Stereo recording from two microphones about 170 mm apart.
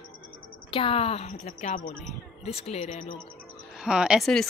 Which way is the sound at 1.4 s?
50° left (ahead or behind).